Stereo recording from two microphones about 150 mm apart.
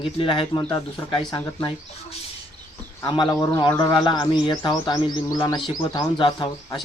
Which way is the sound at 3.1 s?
30° left (ahead or behind).